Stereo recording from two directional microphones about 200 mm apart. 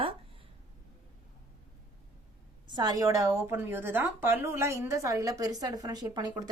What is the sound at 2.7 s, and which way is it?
A woman's voice, 20° right (ahead or behind).